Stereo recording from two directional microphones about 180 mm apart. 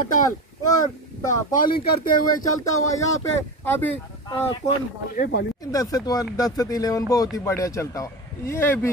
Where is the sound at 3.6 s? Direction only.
10° left (ahead or behind).